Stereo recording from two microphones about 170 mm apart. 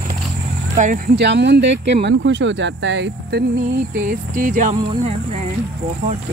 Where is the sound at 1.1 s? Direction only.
90° right.